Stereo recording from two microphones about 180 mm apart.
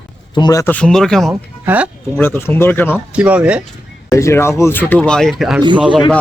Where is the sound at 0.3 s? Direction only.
25° left (ahead or behind).